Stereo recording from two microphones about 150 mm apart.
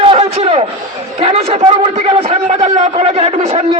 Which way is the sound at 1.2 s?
40° right (ahead or behind).